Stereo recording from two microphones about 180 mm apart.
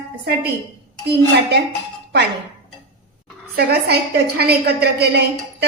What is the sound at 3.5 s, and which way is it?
A woman's voice, 65° right (ahead or behind).